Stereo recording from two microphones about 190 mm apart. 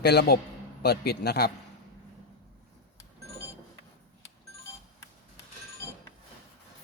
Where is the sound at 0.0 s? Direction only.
55° left (ahead or behind).